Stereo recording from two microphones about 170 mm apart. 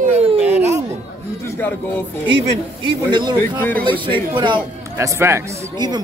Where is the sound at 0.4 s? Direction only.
10° right (ahead or behind).